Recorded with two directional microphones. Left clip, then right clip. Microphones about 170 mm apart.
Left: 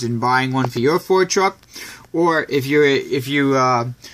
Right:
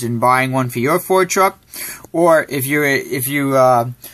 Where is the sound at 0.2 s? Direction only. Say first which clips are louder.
Right 4 dB; 5° right (ahead or behind).